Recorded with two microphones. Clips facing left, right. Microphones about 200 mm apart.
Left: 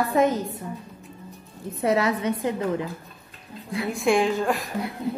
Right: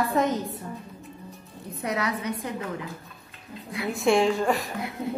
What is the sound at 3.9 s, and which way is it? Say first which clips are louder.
Speech: even; centre (ahead or behind).